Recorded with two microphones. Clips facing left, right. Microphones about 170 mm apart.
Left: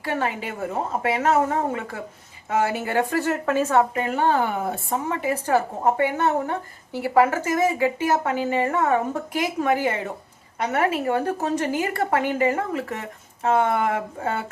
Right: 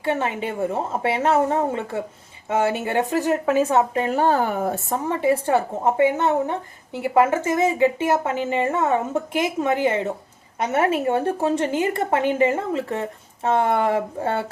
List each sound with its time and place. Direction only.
0.0 s a woman's voice: 25° right (ahead or behind)
3.9 s a woman's voice: 35° right (ahead or behind)